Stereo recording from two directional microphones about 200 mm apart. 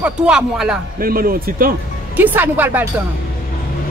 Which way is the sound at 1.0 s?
45° right (ahead or behind).